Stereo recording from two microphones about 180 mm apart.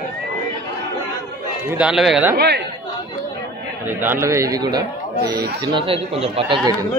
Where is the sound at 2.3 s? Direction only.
65° right (ahead or behind).